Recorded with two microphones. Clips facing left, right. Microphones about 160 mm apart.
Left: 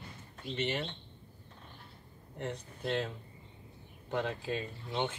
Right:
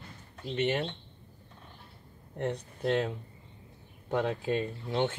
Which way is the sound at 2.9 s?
50° right (ahead or behind).